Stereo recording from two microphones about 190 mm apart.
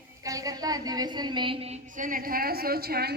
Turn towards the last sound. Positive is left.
turn(degrees=-55)  # may be behind; listen again after turning